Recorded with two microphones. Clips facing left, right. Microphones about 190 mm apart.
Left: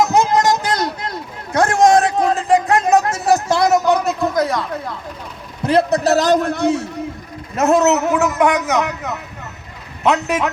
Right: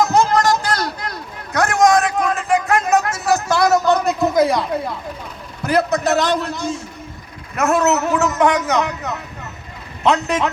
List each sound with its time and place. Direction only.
0.0 s chatter: 20° left (ahead or behind)
3.8 s a sound: 5° left (ahead or behind); by 4.9 s 10° right (ahead or behind)
5.6 s a man's voice: 30° left (ahead or behind); by 6.8 s 65° left (ahead or behind)
7.5 s a man's voice: 25° left (ahead or behind); by 10.5 s 5° left (ahead or behind)